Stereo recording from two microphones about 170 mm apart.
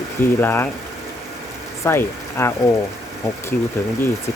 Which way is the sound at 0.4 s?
10° left (ahead or behind).